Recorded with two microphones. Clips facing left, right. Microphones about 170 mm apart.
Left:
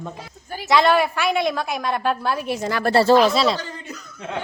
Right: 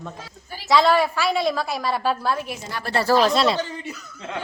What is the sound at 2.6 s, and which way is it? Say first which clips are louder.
Speech: left 8 dB; 90° left.